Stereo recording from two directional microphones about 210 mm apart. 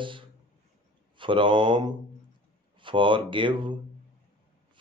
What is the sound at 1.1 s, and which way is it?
Speech, 25° right (ahead or behind).